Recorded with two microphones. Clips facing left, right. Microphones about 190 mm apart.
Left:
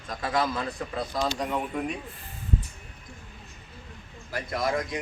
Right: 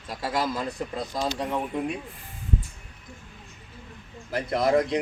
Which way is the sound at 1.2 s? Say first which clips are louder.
Right 1 dB; 20° right (ahead or behind).